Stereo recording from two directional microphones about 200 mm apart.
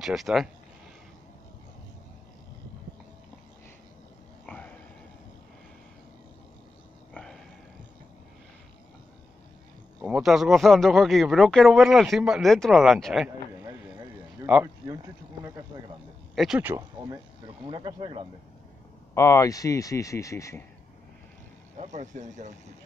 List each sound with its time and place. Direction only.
0.0 s speech: centre (ahead or behind)
4.5 s a sound: 5° left (ahead or behind)
10.0 s speech: 5° right (ahead or behind)
14.4 s speech: 10° right (ahead or behind)
16.3 s speech: 5° right (ahead or behind); by 18.2 s 25° right (ahead or behind)
19.1 s speech: 15° left (ahead or behind)
21.7 s speech: 35° right (ahead or behind)